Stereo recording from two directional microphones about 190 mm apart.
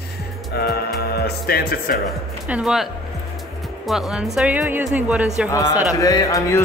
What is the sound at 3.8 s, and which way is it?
Speech, centre (ahead or behind).